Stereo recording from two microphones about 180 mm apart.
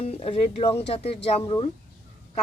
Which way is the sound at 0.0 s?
30° left (ahead or behind).